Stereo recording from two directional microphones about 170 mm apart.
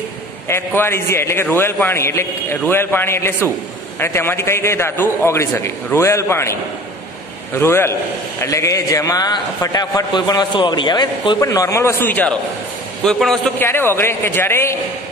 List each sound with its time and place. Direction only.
0.5 s a man's voice: 15° left (ahead or behind)
7.5 s a man's voice: 15° left (ahead or behind)
13.7 s a man's voice: 15° left (ahead or behind)